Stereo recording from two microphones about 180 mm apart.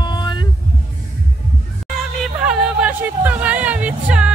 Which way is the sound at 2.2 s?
5° right (ahead or behind).